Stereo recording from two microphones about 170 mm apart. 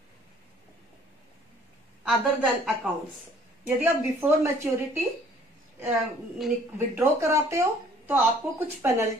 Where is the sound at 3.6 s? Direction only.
10° right (ahead or behind).